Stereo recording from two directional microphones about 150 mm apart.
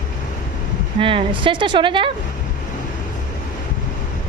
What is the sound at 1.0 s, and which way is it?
A woman's voice, 35° right (ahead or behind).